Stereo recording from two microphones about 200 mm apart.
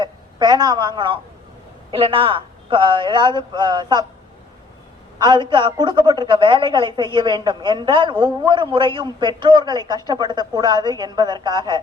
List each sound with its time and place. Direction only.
0.0 s a woman's voice: 20° right (ahead or behind)
5.2 s a woman's voice: 20° right (ahead or behind)